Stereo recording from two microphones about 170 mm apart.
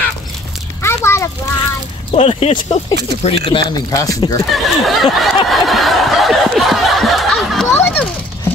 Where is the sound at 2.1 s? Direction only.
35° left (ahead or behind); by 4.4 s 20° left (ahead or behind).